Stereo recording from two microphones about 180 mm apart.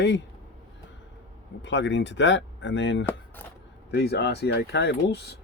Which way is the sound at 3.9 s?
65° left (ahead or behind).